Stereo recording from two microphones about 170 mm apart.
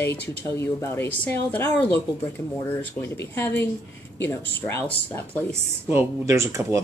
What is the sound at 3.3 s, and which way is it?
Speech, 10° left (ahead or behind).